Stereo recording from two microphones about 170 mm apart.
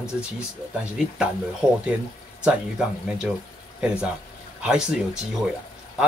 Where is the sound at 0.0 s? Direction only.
5° right (ahead or behind).